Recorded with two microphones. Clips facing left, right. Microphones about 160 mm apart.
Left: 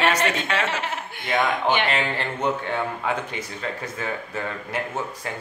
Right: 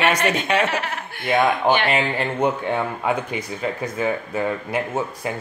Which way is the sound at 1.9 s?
15° right (ahead or behind).